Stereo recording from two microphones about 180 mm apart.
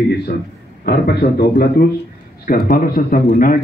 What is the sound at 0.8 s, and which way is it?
A man's voice, 60° left (ahead or behind).